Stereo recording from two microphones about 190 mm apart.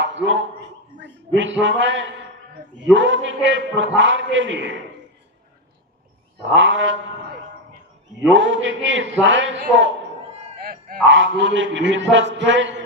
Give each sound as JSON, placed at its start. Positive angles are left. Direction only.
{"t": 0.0, "sound": "a sound", "side_deg": -80}
{"t": 0.9, "sound": "a man's voice", "side_deg": -75}
{"t": 6.4, "sound": "a man's voice", "side_deg": -80}
{"t": 8.3, "sound": "a man's voice", "side_deg": -80}
{"t": 10.4, "sound": "a sound", "side_deg": -45}
{"t": 11.1, "sound": "a man's voice", "side_deg": -80}